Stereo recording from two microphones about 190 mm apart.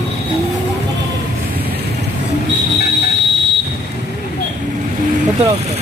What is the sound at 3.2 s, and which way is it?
Buzzer, 65° right (ahead or behind).